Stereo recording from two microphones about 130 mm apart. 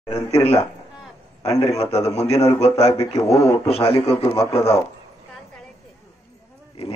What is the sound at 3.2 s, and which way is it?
Speech, 25° left (ahead or behind).